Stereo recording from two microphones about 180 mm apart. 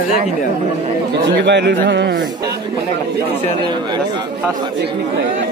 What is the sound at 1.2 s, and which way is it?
A man's voice, 75° right (ahead or behind).